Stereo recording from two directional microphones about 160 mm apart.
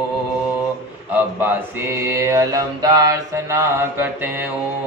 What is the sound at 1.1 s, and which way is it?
Mantra, 10° right (ahead or behind).